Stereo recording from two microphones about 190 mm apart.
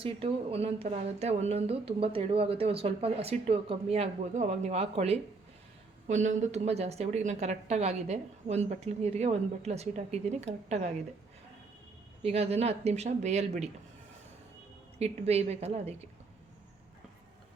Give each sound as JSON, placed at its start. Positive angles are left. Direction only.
{"t": 0.0, "sound": "speech", "side_deg": -30}
{"t": 12.2, "sound": "speech", "side_deg": -30}
{"t": 14.9, "sound": "speech", "side_deg": -35}